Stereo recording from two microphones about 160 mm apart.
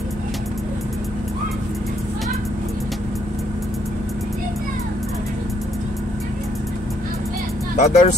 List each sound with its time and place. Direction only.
7.7 s speech: 50° left (ahead or behind)